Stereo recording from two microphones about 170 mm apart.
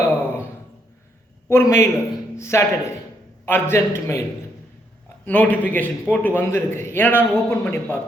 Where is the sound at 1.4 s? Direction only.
15° left (ahead or behind).